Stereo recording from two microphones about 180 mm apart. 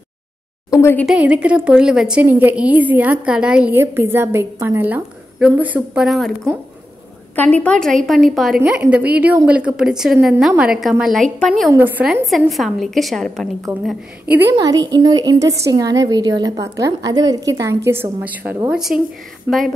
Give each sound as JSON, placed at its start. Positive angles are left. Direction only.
{"t": 0.7, "sound": "speech", "side_deg": 15}
{"t": 1.0, "sound": "a woman's voice", "side_deg": -5}
{"t": 11.7, "sound": "a woman's voice", "side_deg": -10}
{"t": 14.5, "sound": "a woman's voice", "side_deg": -20}